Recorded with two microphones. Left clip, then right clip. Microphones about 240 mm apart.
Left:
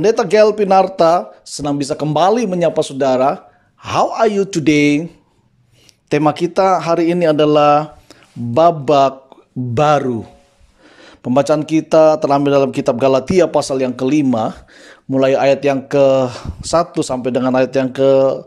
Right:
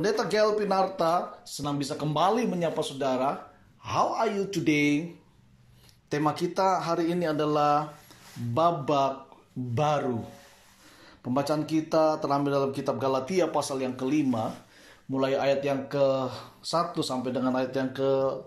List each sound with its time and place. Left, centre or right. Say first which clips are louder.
0.0 s speech: left 14 dB; left
6.0 s speech: left 13 dB; left